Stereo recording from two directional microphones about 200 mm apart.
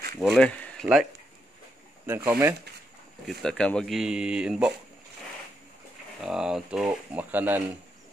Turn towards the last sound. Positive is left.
turn(degrees=-10)  # may be behind; listen again after turning